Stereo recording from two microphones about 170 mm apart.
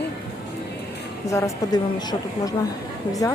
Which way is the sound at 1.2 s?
20° left (ahead or behind).